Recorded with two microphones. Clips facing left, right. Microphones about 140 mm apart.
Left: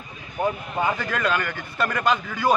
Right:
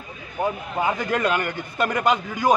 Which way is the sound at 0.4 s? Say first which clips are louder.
Even; 10° right (ahead or behind).